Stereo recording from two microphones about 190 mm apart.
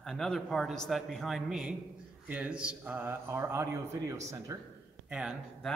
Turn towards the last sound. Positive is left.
turn(degrees=-5)  # may be behind; listen again after turning